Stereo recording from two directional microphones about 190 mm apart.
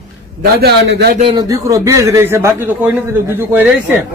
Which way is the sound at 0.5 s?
55° right (ahead or behind).